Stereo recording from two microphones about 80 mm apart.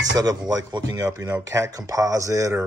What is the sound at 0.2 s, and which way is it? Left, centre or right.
Speech, right.